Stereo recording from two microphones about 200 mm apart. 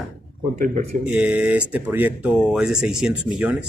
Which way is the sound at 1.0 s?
5° right (ahead or behind).